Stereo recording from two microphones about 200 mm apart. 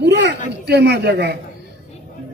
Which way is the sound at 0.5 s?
55° right (ahead or behind).